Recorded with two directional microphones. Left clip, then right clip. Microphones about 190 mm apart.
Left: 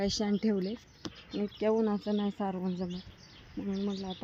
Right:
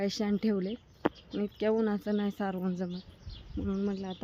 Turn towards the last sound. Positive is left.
turn(degrees=-20)  # may be behind; listen again after turning